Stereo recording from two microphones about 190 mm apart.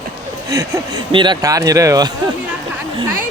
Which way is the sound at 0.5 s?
20° right (ahead or behind).